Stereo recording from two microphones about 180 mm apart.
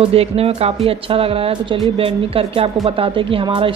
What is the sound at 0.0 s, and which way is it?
Speech, 35° right (ahead or behind).